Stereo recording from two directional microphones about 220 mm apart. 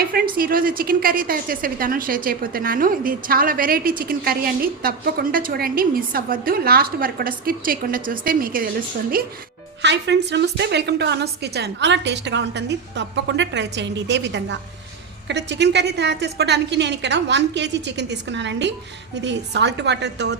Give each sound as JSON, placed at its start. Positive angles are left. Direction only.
{"t": 0.0, "sound": "a woman's voice", "side_deg": -40}
{"t": 9.8, "sound": "a woman's voice", "side_deg": -50}